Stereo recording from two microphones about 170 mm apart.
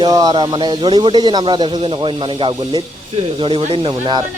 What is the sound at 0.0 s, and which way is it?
Speech, 25° right (ahead or behind).